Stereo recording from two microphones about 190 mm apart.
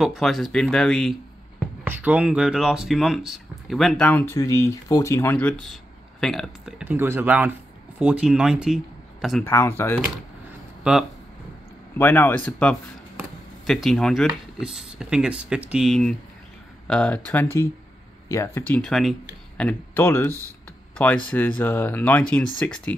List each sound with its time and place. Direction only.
0.0 s speech: centre (ahead or behind)
1.9 s speech: 10° right (ahead or behind)
6.8 s speech: 10° right (ahead or behind)
9.4 s speech: 15° left (ahead or behind)
10.8 s speech: 5° right (ahead or behind)
12.0 s speech: 10° left (ahead or behind)
18.7 s speech: centre (ahead or behind)